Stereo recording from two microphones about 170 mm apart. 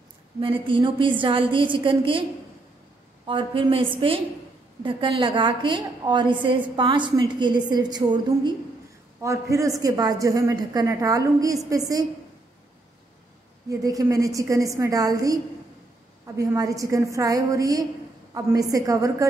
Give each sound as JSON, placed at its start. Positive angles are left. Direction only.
{"t": 0.4, "sound": "a woman's voice", "side_deg": -30}
{"t": 3.3, "sound": "a woman's voice", "side_deg": -30}
{"t": 13.7, "sound": "a woman's voice", "side_deg": -20}